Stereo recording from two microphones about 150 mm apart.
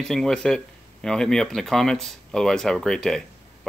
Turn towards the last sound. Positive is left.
turn(degrees=5)  # may be behind; listen again after turning